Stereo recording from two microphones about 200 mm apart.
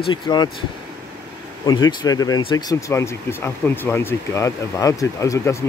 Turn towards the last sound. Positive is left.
turn(degrees=15)  # may be behind; listen again after turning